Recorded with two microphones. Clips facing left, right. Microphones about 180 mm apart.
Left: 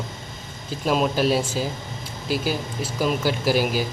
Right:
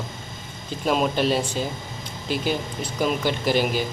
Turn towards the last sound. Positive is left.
turn(degrees=5)  # may be behind; listen again after turning